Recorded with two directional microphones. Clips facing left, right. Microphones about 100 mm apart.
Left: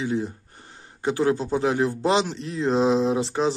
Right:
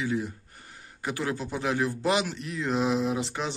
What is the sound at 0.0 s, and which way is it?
Speech, 30° left (ahead or behind).